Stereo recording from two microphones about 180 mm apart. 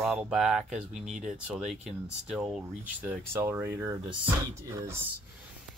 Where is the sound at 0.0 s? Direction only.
Centre (ahead or behind).